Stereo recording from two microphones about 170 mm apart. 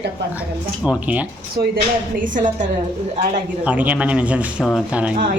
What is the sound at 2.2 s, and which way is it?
Speech, 50° right (ahead or behind).